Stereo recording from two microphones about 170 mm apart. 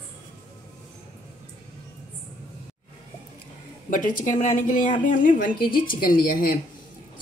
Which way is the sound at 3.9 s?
50° left (ahead or behind).